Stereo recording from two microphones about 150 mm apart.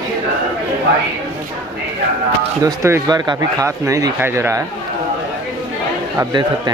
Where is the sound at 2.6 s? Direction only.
20° right (ahead or behind).